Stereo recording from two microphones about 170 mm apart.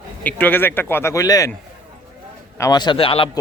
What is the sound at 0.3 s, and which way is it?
Speech, 10° left (ahead or behind).